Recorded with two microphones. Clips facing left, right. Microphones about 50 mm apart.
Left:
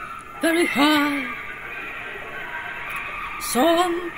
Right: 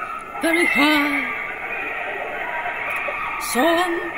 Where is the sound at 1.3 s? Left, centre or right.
Right.